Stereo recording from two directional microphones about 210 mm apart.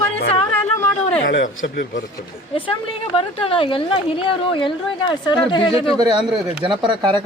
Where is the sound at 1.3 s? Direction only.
60° left (ahead or behind).